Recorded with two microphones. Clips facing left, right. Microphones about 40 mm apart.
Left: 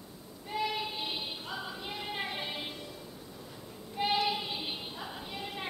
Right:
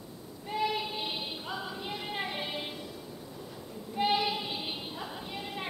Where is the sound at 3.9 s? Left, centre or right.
Centre.